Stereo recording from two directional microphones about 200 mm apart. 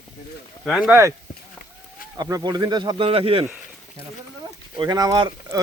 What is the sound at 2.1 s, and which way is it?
Speech, 20° right (ahead or behind).